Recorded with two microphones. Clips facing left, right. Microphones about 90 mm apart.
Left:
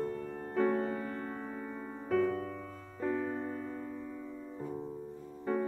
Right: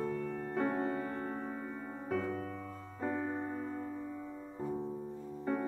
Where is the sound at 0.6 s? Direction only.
25° right (ahead or behind).